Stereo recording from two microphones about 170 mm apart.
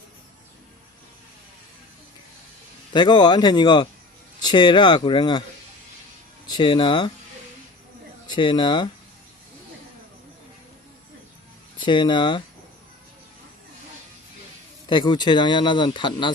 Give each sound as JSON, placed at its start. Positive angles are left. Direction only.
{"t": 2.9, "sound": "speech", "side_deg": 25}
{"t": 6.5, "sound": "speech", "side_deg": 30}
{"t": 8.3, "sound": "speech", "side_deg": 30}
{"t": 11.8, "sound": "speech", "side_deg": 30}
{"t": 14.8, "sound": "speech", "side_deg": 25}